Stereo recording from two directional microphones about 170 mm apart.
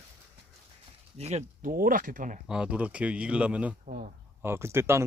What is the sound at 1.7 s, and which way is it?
Speech, 55° right (ahead or behind).